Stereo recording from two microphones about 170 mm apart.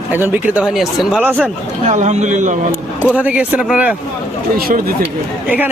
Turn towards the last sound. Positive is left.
turn(degrees=-10)  # may be behind; listen again after turning